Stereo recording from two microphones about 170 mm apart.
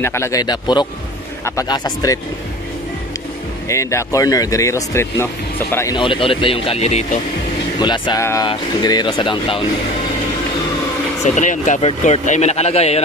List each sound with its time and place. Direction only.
0.0 s speech: 15° left (ahead or behind)
3.6 s speech: 15° left (ahead or behind)
5.9 s speech: 30° left (ahead or behind)
7.8 s speech: 25° left (ahead or behind)
8.2 s speech: 15° left (ahead or behind)
11.2 s speech: 45° left (ahead or behind)